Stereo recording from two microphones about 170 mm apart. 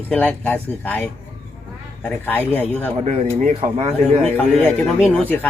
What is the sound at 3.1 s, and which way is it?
Cattle, 40° right (ahead or behind).